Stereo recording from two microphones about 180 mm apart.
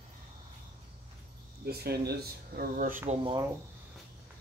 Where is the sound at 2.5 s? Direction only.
50° right (ahead or behind).